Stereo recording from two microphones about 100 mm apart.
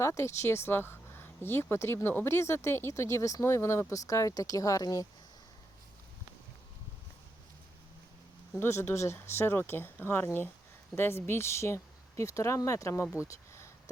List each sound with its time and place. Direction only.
0.0 s speech: 30° left (ahead or behind)
8.5 s speech: 25° left (ahead or behind)
13.2 s a sound: 30° left (ahead or behind)